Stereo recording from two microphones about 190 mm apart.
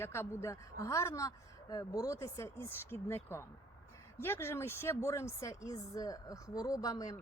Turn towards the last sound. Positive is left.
turn(degrees=20)  # may be behind; listen again after turning